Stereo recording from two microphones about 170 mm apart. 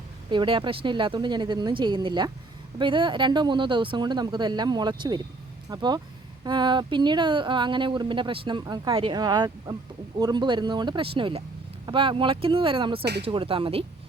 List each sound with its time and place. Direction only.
0.3 s speech: 30° right (ahead or behind)